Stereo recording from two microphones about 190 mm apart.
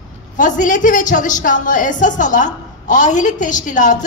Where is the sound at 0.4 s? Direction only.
40° left (ahead or behind).